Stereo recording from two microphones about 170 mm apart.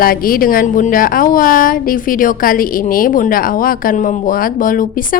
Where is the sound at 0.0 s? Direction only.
60° left (ahead or behind).